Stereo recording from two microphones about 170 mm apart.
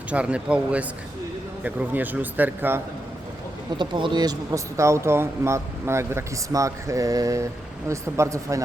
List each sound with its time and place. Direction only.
0.1 s a man's voice: 5° right (ahead or behind)
3.8 s a man's voice: 25° right (ahead or behind)